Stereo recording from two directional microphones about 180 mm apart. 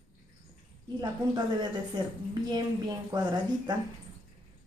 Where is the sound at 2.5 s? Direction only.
25° right (ahead or behind).